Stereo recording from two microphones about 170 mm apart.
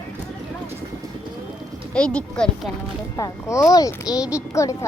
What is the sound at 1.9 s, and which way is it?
Speech, 5° left (ahead or behind).